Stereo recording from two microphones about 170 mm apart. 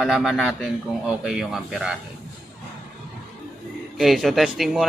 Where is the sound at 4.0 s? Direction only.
Centre (ahead or behind).